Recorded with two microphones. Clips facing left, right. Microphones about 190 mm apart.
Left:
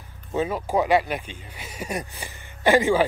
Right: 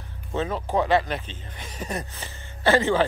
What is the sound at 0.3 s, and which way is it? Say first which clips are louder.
Speech: left 2 dB; 10° left (ahead or behind).